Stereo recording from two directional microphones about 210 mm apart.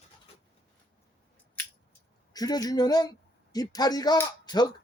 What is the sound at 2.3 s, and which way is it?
Speech, 20° left (ahead or behind).